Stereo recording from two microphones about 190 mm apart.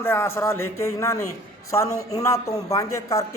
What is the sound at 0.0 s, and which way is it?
A man's voice, 10° left (ahead or behind).